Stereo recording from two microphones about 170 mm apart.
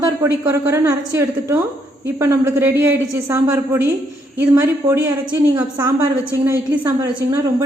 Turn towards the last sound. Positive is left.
turn(degrees=-20)  # may be behind; listen again after turning